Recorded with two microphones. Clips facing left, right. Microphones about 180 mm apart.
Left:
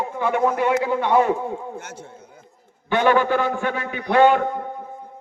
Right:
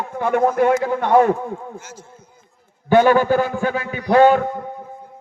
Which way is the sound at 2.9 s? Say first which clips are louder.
Right 4 dB; 40° right (ahead or behind).